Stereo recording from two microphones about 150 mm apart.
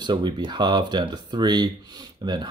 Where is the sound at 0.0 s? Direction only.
30° right (ahead or behind).